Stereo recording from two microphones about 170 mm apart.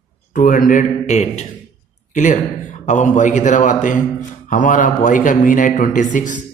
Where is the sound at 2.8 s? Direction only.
45° left (ahead or behind).